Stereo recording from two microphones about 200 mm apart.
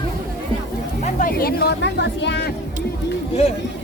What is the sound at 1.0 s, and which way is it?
Speech, 45° left (ahead or behind).